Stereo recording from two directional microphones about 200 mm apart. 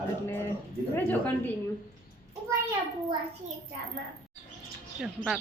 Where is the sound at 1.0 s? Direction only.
10° left (ahead or behind).